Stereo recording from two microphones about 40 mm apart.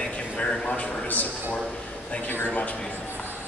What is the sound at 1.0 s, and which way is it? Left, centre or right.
Speech, left.